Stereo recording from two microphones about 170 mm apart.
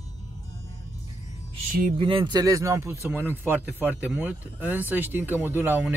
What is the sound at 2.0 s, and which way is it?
Speech, 30° right (ahead or behind).